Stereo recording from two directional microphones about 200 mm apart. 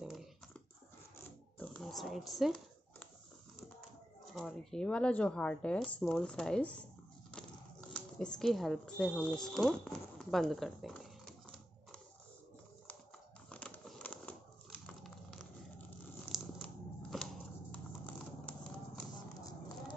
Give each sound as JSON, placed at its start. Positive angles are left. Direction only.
{"t": 0.0, "sound": "dog", "side_deg": 0}
{"t": 1.6, "sound": "oink", "side_deg": 5}
{"t": 4.3, "sound": "speech", "side_deg": 0}
{"t": 7.9, "sound": "speech", "side_deg": 5}
{"t": 13.5, "sound": "crumpling", "side_deg": 5}
{"t": 16.3, "sound": "a sound", "side_deg": 0}